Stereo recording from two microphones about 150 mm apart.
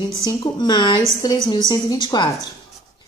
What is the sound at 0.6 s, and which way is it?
A woman's voice, 30° left (ahead or behind).